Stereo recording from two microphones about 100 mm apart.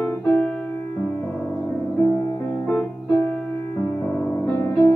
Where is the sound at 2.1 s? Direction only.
25° left (ahead or behind).